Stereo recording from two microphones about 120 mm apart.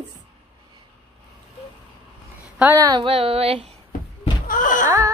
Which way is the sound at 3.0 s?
55° right (ahead or behind).